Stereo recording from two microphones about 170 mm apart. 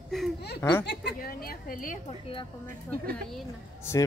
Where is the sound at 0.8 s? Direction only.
70° left (ahead or behind); by 2.0 s 55° left (ahead or behind).